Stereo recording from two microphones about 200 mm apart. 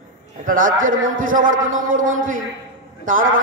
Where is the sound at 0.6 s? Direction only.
80° right.